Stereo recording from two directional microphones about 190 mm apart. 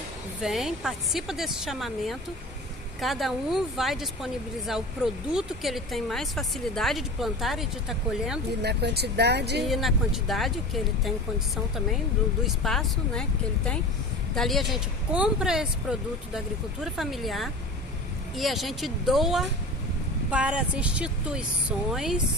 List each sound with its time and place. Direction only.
0.4 s speech: centre (ahead or behind)
8.6 s speech: 60° right (ahead or behind)
9.6 s speech: centre (ahead or behind)